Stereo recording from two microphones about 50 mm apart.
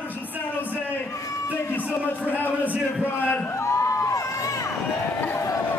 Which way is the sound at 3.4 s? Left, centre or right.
Left.